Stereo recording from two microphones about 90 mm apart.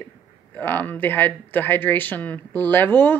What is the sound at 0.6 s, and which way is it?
Speech, 20° left (ahead or behind).